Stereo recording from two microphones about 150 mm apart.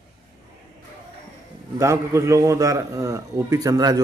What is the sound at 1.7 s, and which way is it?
A man's voice, 20° right (ahead or behind).